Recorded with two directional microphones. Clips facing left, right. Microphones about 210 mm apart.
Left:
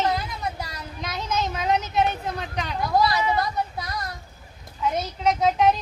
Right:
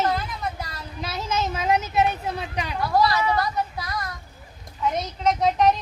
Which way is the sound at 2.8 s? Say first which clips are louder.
Right 1 dB; 15° left (ahead or behind).